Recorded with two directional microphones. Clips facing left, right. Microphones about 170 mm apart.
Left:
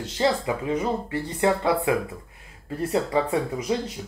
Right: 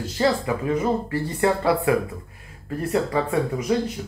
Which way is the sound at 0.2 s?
20° left (ahead or behind).